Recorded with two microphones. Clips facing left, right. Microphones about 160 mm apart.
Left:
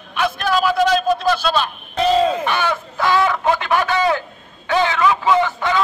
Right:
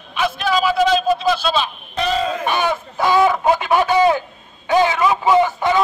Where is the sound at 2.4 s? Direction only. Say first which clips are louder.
Right 1 dB; 15° right (ahead or behind).